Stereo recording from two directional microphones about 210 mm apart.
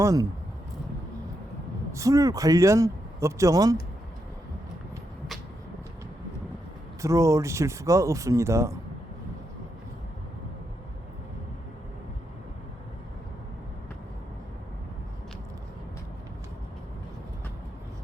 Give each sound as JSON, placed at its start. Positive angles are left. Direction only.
{"t": 0.0, "sound": "speech", "side_deg": -15}
{"t": 1.9, "sound": "speech", "side_deg": -15}
{"t": 7.0, "sound": "speech", "side_deg": -15}